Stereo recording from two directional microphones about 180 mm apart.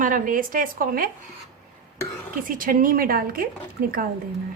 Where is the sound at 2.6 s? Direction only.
50° right (ahead or behind).